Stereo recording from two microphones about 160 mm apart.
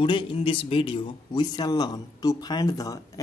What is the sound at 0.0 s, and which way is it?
A man's voice, 35° left (ahead or behind).